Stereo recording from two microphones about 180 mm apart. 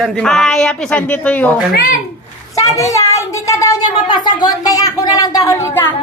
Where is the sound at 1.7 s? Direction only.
50° left (ahead or behind).